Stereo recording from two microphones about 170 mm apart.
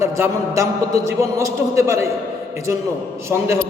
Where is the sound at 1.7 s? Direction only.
15° right (ahead or behind).